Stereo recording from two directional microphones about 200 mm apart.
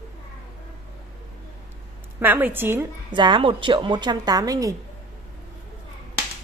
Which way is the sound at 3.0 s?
25° right (ahead or behind).